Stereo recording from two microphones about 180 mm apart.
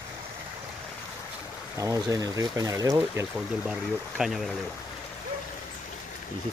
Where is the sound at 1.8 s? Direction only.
20° right (ahead or behind).